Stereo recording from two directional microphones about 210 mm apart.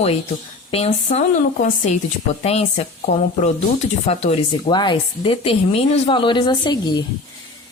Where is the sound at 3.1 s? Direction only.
50° left (ahead or behind).